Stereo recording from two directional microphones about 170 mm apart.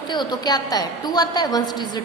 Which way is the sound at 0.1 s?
25° left (ahead or behind).